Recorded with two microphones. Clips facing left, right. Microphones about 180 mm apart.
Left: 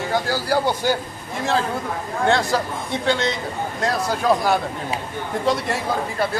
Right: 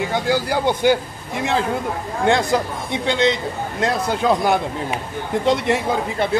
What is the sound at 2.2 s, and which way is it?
Speech, 15° right (ahead or behind).